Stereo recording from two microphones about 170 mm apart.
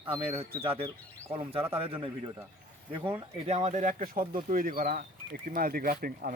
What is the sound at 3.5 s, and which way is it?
Speech, 40° right (ahead or behind).